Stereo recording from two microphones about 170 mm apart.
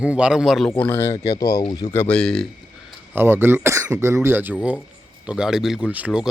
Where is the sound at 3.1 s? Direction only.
15° right (ahead or behind).